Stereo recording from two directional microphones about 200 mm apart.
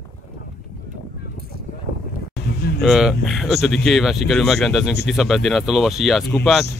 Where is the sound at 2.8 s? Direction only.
Centre (ahead or behind).